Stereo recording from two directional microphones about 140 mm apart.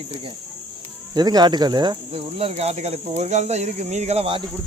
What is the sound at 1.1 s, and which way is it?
Speech, 30° right (ahead or behind).